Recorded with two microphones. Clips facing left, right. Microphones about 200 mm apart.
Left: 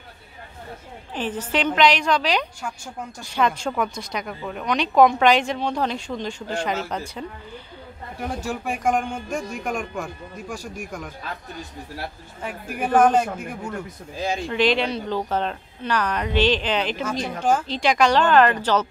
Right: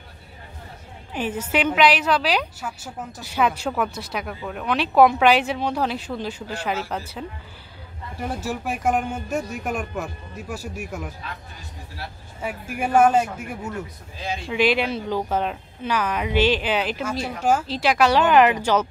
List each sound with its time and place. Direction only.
1.1 s a woman's voice: 10° right (ahead or behind)
12.4 s speech: 10° right (ahead or behind)
14.1 s speech: 45° left (ahead or behind)
14.5 s speech: 10° right (ahead or behind)